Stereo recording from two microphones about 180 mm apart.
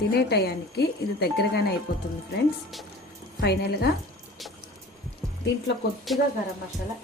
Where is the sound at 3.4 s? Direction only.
65° left (ahead or behind).